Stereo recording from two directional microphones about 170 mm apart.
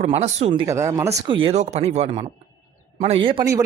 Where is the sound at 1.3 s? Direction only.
30° right (ahead or behind).